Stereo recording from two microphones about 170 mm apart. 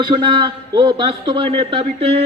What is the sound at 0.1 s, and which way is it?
A man's voice, 30° right (ahead or behind).